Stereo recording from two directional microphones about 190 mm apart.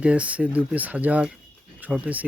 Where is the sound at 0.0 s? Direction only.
5° right (ahead or behind).